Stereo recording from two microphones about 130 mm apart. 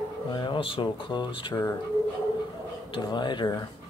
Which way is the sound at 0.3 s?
40° left (ahead or behind).